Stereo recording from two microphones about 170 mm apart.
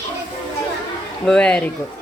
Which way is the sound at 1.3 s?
5° left (ahead or behind).